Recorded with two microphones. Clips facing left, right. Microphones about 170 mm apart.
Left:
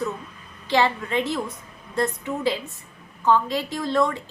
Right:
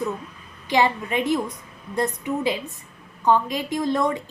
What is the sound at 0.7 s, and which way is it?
A woman's voice, 15° right (ahead or behind).